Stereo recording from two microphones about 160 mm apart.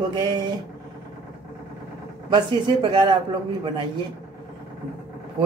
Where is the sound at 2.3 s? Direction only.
30° right (ahead or behind).